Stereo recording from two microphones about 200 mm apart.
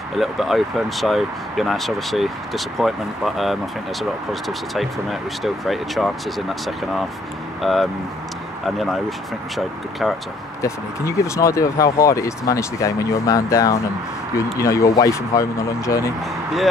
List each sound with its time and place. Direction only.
0.2 s speech: centre (ahead or behind)
7.6 s speech: centre (ahead or behind)
10.6 s speech: 15° left (ahead or behind)